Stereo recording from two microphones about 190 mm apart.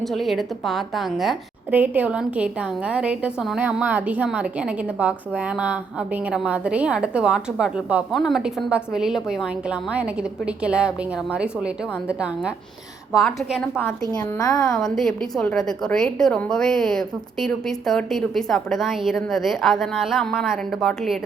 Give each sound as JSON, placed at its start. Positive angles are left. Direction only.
{"t": 0.0, "sound": "a woman's voice", "side_deg": 0}
{"t": 14.3, "sound": "a woman's voice", "side_deg": 20}
{"t": 14.8, "sound": "a woman's voice", "side_deg": 0}